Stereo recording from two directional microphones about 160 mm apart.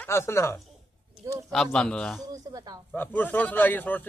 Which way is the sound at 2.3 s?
20° right (ahead or behind).